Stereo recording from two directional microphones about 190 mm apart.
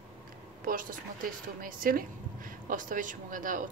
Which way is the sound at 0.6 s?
45° right (ahead or behind).